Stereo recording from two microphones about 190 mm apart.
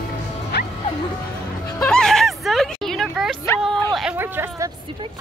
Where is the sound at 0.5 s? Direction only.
65° left (ahead or behind).